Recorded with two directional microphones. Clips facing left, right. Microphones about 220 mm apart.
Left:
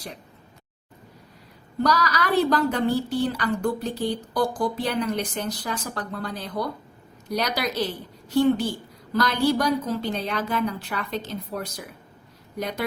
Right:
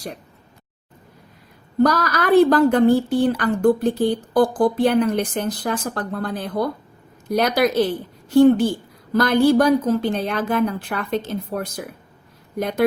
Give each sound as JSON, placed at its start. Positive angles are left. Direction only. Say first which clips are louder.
{"t": 1.8, "sound": "a woman's voice", "louder": "right 5 dB", "side_deg": -50}